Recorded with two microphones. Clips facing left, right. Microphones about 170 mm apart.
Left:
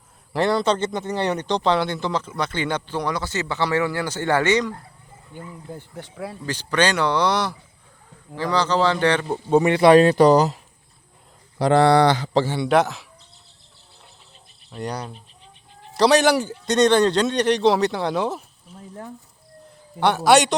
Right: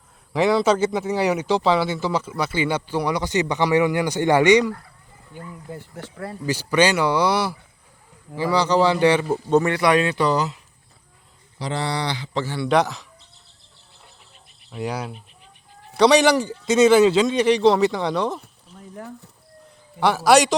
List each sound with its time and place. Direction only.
0.3 s speech: centre (ahead or behind)
6.0 s speech: 5° right (ahead or behind)
9.5 s speech: 15° left (ahead or behind)
9.7 s speech: 30° left (ahead or behind)
11.6 s speech: 55° left (ahead or behind); by 12.5 s 40° left (ahead or behind)
12.6 s speech: centre (ahead or behind)
14.7 s speech: 5° right (ahead or behind)
20.0 s speech: centre (ahead or behind)